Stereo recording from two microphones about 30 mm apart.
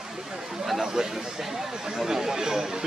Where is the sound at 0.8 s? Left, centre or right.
Centre.